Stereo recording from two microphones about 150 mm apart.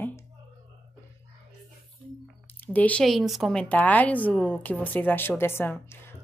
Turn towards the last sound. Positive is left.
turn(degrees=15)  # may be behind; listen again after turning